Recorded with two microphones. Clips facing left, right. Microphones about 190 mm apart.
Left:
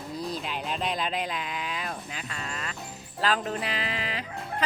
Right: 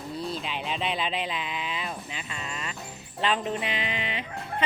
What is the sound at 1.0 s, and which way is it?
Mantra, 45° left (ahead or behind).